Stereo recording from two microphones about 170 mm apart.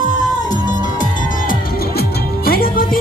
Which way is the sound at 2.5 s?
60° left (ahead or behind).